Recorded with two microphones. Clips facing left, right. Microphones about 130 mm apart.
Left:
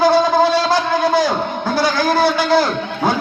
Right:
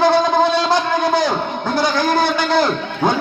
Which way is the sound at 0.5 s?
20° right (ahead or behind).